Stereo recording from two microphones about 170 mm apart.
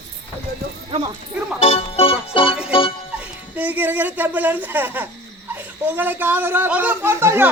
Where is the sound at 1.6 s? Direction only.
35° left (ahead or behind).